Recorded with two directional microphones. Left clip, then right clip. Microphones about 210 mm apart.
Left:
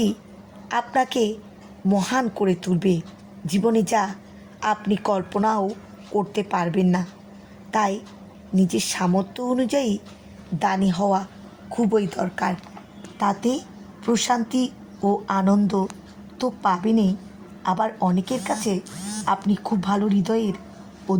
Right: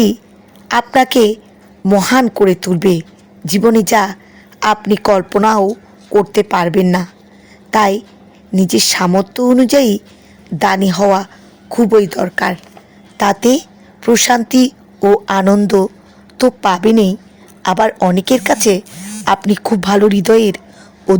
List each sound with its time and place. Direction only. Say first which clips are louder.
0.7 s a woman's voice: right 11 dB; 35° right (ahead or behind)